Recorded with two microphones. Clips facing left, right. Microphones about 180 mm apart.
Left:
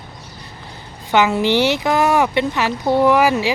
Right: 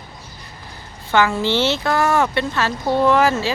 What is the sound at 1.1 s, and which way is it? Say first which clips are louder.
Speech: left 2 dB; 20° left (ahead or behind).